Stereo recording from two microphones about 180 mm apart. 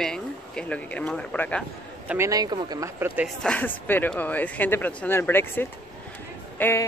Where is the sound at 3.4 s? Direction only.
5° left (ahead or behind).